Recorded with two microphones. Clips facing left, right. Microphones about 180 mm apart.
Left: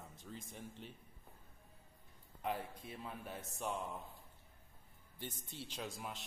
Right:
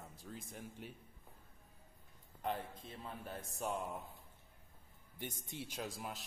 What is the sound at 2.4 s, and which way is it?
Speech, 5° left (ahead or behind).